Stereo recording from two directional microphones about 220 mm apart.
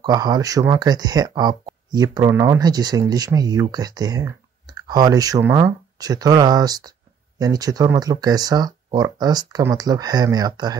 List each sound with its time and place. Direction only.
0.0 s speech: 20° right (ahead or behind)